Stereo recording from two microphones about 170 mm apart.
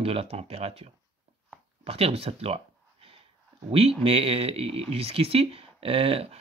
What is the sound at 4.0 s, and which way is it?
Speech, 35° right (ahead or behind).